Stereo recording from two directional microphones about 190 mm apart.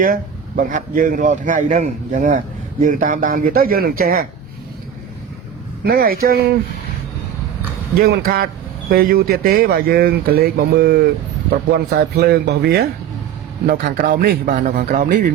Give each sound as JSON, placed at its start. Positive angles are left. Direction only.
{"t": 0.0, "sound": "a man's voice", "side_deg": -45}
{"t": 5.8, "sound": "a man's voice", "side_deg": -50}
{"t": 7.9, "sound": "a man's voice", "side_deg": -50}